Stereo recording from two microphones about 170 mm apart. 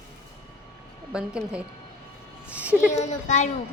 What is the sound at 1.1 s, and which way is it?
Speech, 5° right (ahead or behind).